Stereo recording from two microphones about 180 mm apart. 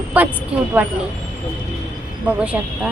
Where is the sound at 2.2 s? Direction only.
5° right (ahead or behind).